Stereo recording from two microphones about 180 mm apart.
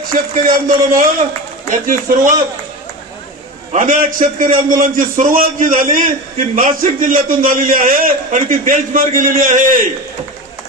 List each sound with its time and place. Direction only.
0.3 s a man's voice: 50° right (ahead or behind)
3.7 s a man's voice: 45° right (ahead or behind)